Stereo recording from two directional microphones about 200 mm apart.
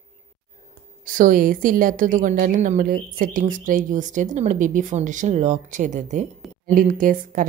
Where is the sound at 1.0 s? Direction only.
40° right (ahead or behind).